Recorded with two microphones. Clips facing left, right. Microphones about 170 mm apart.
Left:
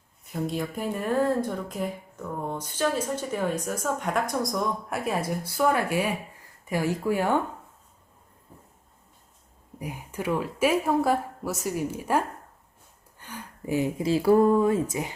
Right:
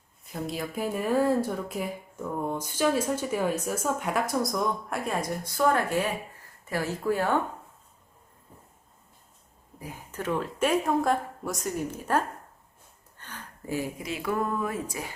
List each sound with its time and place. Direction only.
0.4 s speech: 5° right (ahead or behind); by 7.3 s 15° left (ahead or behind)
9.8 s speech: 15° left (ahead or behind)
13.1 s a sound: 10° left (ahead or behind)
14.1 s speech: 35° left (ahead or behind)